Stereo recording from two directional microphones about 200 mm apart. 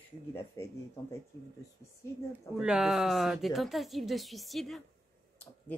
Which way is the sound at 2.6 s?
5° right (ahead or behind).